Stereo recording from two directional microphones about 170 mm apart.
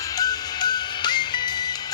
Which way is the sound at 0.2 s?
25° left (ahead or behind).